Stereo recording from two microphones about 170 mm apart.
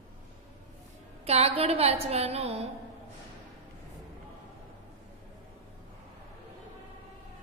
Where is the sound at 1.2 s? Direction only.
35° right (ahead or behind).